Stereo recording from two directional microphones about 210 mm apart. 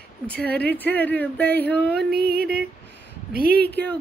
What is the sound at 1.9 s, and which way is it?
Music, 50° right (ahead or behind).